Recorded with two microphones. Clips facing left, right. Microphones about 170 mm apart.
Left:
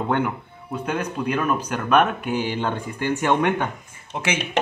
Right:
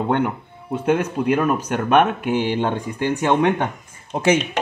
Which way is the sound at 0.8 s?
25° right (ahead or behind).